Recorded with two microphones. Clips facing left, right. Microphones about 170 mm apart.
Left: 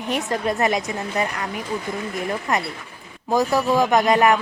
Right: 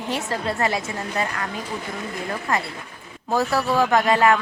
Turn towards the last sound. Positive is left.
turn(degrees=15)  # may be behind; listen again after turning